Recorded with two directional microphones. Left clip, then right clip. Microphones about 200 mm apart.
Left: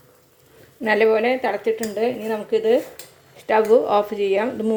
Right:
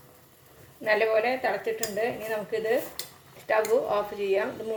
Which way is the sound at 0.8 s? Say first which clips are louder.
Left 6 dB; 50° left (ahead or behind).